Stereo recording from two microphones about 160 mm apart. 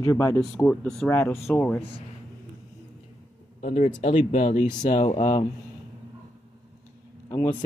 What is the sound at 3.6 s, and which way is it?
Speech, 45° left (ahead or behind).